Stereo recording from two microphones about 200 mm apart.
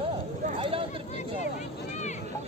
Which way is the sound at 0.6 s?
25° right (ahead or behind).